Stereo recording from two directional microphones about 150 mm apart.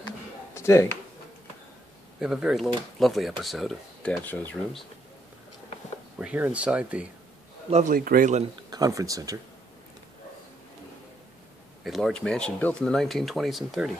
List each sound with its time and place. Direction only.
0.6 s a sound: 20° left (ahead or behind)
2.1 s speech: 5° right (ahead or behind)
6.1 s speech: 10° right (ahead or behind)
7.9 s speech: 70° right (ahead or behind)
8.6 s speech: 25° right (ahead or behind)
11.8 s speech: centre (ahead or behind)